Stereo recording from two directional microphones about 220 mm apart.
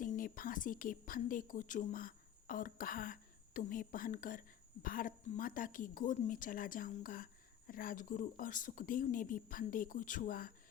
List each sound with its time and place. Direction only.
0.0 s speech: 40° left (ahead or behind)